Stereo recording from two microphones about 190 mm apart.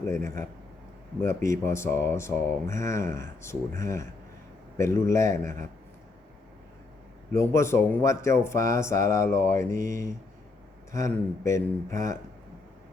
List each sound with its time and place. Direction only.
0.1 s speech: 15° left (ahead or behind)
7.3 s speech: 15° left (ahead or behind)
10.9 s speech: 15° left (ahead or behind)